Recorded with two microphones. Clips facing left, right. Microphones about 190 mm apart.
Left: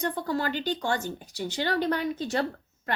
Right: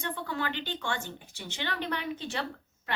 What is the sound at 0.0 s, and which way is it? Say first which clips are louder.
A woman's voice: left 6 dB; 40° left (ahead or behind).